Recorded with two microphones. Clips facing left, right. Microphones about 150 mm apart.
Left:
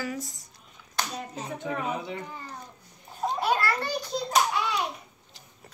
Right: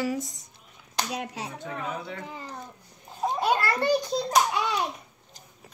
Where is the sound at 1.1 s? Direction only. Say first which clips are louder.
Right 3 dB; 80° right.